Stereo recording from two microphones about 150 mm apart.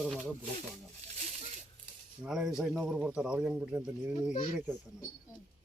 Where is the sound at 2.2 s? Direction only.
5° right (ahead or behind).